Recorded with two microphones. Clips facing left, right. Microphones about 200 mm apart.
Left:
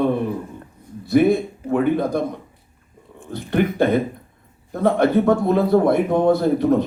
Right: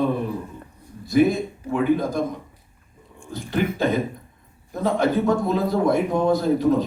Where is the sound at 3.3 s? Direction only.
60° left (ahead or behind).